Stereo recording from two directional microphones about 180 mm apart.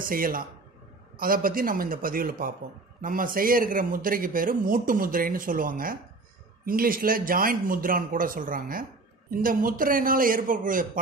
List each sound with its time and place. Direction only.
0.0 s speech: 50° right (ahead or behind)